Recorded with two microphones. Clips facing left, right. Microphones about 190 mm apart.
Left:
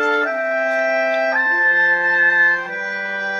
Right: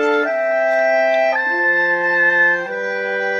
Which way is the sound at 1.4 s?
20° right (ahead or behind).